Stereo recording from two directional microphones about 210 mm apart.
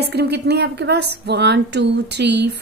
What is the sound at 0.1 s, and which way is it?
Speech, 50° right (ahead or behind).